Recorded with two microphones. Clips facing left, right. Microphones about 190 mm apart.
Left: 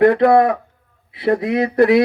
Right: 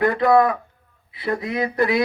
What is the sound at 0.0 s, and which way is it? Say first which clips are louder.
Speech: left 5 dB; 70° left (ahead or behind).